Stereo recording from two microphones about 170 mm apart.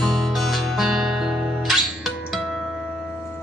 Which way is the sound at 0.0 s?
Centre (ahead or behind).